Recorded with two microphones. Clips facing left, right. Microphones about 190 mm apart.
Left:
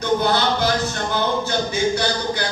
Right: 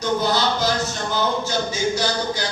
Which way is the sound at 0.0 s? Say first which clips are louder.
Left 2 dB; 60° left (ahead or behind).